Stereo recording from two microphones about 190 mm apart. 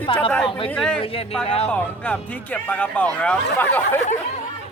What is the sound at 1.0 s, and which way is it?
Speech, 30° left (ahead or behind).